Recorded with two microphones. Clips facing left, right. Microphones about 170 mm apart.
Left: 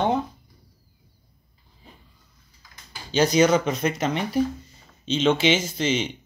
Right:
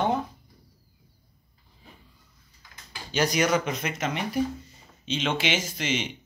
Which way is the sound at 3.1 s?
25° left (ahead or behind).